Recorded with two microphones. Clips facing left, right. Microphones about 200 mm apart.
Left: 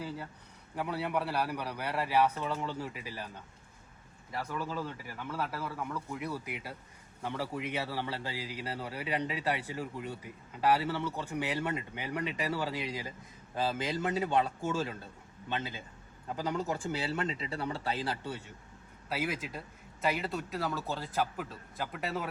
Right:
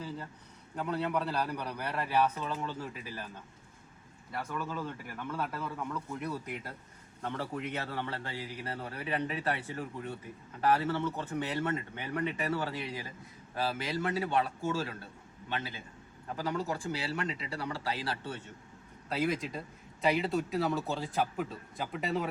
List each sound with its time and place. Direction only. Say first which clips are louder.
0.8 s a man's voice: right 1 dB; 10° left (ahead or behind)
4.3 s a man's voice: even; 10° left (ahead or behind)
19.0 s speech: right 3 dB; 5° left (ahead or behind)